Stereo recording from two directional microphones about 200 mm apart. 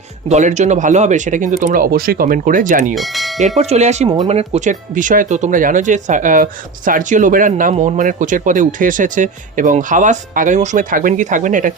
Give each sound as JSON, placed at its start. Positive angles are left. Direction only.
{"t": 0.3, "sound": "speech", "side_deg": -35}
{"t": 2.9, "sound": "speech", "side_deg": 0}
{"t": 3.6, "sound": "speech", "side_deg": -35}